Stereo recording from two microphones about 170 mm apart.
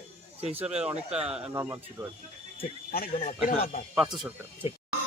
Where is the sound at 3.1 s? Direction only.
40° left (ahead or behind).